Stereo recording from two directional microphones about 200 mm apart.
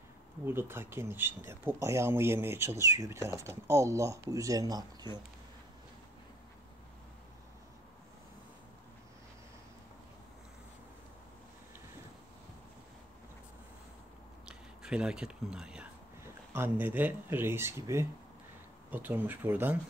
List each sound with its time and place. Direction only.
0.5 s speech: 10° right (ahead or behind)
14.5 s speech: 5° right (ahead or behind)